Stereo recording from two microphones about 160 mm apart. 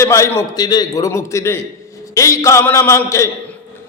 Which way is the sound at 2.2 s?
20° left (ahead or behind).